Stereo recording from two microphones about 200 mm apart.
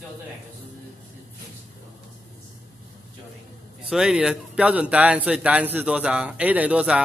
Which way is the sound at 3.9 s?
5° right (ahead or behind).